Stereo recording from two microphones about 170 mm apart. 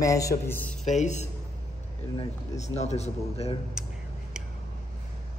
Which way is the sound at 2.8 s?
40° left (ahead or behind).